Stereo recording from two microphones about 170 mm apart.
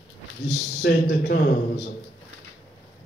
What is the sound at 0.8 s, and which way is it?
Speech, 70° left (ahead or behind).